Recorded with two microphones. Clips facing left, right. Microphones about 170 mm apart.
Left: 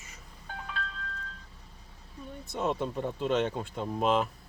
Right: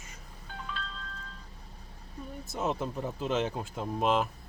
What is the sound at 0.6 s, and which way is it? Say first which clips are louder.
Music: left 1 dB; 60° left (ahead or behind).